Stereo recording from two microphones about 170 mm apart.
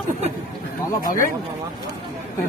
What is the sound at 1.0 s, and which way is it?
Speech, 55° left (ahead or behind).